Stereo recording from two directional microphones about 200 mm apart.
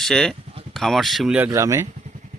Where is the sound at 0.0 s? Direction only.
5° left (ahead or behind).